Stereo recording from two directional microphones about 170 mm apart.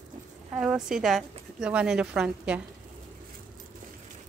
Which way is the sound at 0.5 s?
5° right (ahead or behind).